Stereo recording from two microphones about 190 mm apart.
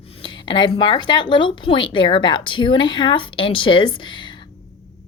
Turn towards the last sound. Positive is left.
turn(degrees=25)  # may be behind; listen again after turning